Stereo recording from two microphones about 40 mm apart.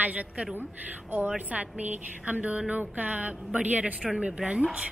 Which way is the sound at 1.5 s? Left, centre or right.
Right.